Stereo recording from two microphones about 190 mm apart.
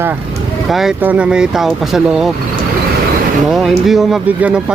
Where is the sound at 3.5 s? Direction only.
Centre (ahead or behind).